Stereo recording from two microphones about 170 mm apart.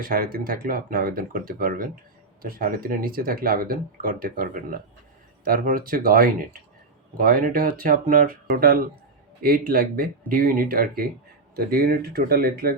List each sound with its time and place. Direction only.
0.0 s speech: 60° right (ahead or behind)